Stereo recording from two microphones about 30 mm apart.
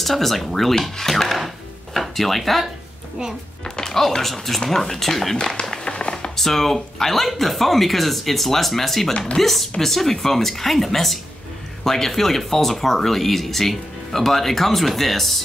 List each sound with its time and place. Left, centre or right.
0.0 s speech: centre
3.6 s music: left
4.2 s speech: centre
5.4 s music: left
6.3 s speech: centre